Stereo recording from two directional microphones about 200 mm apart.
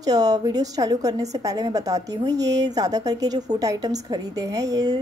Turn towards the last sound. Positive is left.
turn(degrees=-20)  # may be behind; listen again after turning